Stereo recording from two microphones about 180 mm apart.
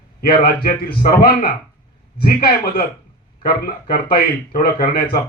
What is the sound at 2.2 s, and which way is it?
A man's voice, 55° left (ahead or behind).